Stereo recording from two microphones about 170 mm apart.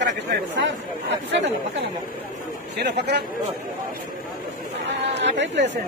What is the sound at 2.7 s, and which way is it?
Speech, 80° right.